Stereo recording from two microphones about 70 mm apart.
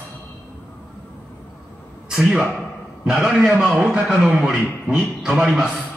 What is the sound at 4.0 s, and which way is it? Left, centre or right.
A man's voice, centre.